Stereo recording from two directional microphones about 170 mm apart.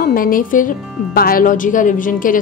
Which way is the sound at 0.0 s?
55° left (ahead or behind).